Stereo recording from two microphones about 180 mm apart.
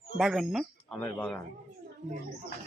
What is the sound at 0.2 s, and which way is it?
Speech, centre (ahead or behind).